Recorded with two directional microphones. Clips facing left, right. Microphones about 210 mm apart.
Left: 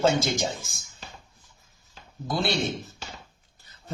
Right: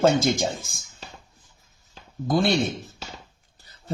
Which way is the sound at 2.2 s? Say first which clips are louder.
Right 6 dB; 50° right (ahead or behind).